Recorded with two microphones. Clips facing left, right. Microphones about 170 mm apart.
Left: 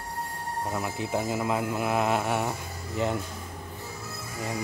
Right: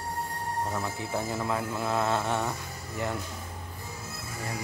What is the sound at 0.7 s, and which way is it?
Speech, 15° left (ahead or behind).